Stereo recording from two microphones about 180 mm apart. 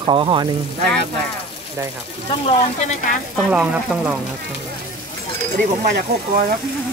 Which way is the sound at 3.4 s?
5° right (ahead or behind).